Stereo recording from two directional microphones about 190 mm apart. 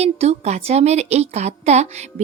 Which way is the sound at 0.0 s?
35° right (ahead or behind).